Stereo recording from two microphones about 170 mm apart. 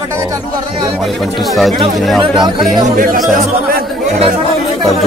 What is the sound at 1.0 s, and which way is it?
A man's voice, centre (ahead or behind).